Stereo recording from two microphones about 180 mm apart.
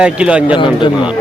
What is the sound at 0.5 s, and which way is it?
Speech, 25° left (ahead or behind).